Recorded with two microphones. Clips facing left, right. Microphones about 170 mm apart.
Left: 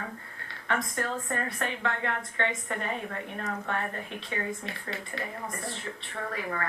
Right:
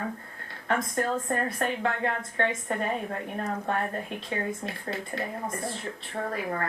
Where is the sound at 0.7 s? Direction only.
40° right (ahead or behind).